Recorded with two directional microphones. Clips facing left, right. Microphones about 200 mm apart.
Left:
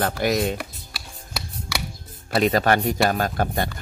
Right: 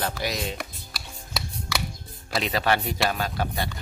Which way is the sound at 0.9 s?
5° left (ahead or behind).